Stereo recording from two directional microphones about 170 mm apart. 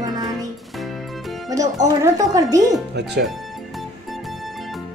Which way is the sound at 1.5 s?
20° right (ahead or behind).